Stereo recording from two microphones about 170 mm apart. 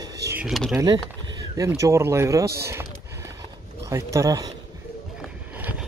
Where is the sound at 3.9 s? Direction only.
15° right (ahead or behind).